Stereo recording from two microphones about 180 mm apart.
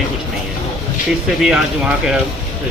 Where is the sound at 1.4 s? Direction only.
5° right (ahead or behind).